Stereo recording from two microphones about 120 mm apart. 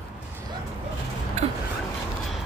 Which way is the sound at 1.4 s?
60° right (ahead or behind).